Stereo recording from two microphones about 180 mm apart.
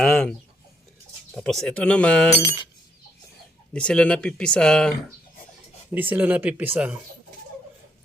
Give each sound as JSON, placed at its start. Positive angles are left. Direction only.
{"t": 0.0, "sound": "chicken", "side_deg": 5}
{"t": 1.4, "sound": "speech", "side_deg": 0}
{"t": 2.4, "sound": "glass", "side_deg": 15}
{"t": 3.7, "sound": "speech", "side_deg": 5}
{"t": 5.9, "sound": "speech", "side_deg": -10}